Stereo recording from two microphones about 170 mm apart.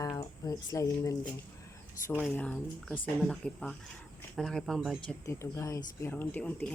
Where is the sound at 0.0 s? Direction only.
20° left (ahead or behind).